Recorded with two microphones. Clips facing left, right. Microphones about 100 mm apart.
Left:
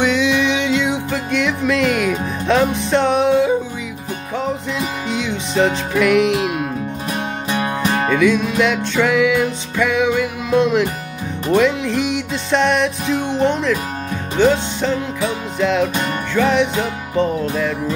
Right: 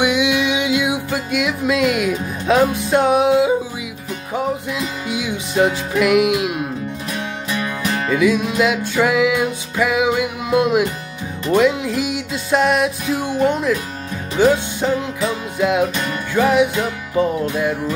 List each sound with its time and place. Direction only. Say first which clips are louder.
0.0 s music: left 1 dB; 15° right (ahead or behind)
5.1 s music: even; 10° right (ahead or behind)
7.5 s music: left 3 dB; 30° left (ahead or behind)
8.1 s music: right 1 dB; 10° right (ahead or behind)
13.3 s speech: right 1 dB; 25° left (ahead or behind)
14.4 s music: even; 15° right (ahead or behind)